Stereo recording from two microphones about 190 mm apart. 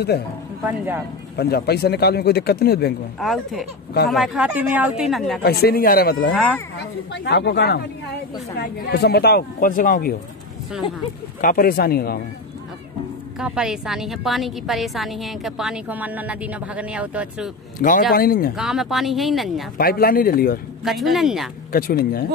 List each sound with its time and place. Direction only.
0.7 s speech: 10° right (ahead or behind)
1.3 s speech: 55° left (ahead or behind)
3.2 s a woman's voice: centre (ahead or behind)
5.4 s speech: 55° left (ahead or behind)
6.3 s a woman's voice: centre (ahead or behind)
6.8 s speech: 65° left (ahead or behind); by 10.1 s 45° left (ahead or behind)
11.4 s speech: 50° left (ahead or behind)
13.4 s a woman's voice: 5° right (ahead or behind)
17.7 s speech: 45° left (ahead or behind)
18.6 s a woman's voice: centre (ahead or behind)
19.8 s speech: 50° left (ahead or behind)
20.8 s a woman's voice: centre (ahead or behind)
21.7 s speech: 50° left (ahead or behind)